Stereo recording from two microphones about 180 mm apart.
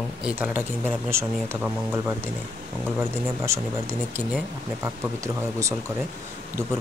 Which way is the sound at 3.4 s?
15° right (ahead or behind).